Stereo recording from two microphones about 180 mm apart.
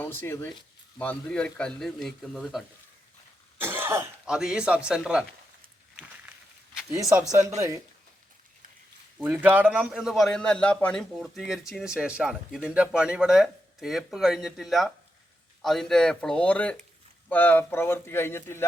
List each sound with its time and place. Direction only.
0.0 s speech: 10° left (ahead or behind)
3.6 s speech: 15° right (ahead or behind)
6.9 s speech: 15° right (ahead or behind)
9.1 s speech: 10° right (ahead or behind); by 18.6 s 15° left (ahead or behind)